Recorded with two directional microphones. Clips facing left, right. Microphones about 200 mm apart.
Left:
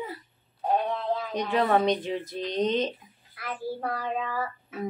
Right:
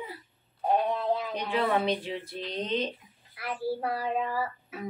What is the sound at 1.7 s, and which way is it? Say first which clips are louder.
Speech: left 4 dB; 40° left (ahead or behind).